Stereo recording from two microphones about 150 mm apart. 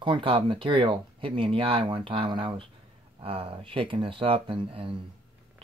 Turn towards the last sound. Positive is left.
turn(degrees=-35)  # may be behind; listen again after turning